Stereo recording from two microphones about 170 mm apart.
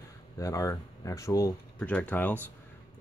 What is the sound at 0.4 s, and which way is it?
Speech, 20° left (ahead or behind).